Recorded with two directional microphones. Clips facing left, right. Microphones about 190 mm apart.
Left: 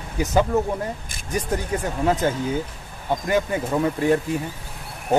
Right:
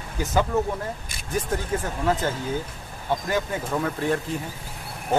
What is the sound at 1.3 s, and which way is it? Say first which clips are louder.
Speech: left 1 dB; 15° left (ahead or behind).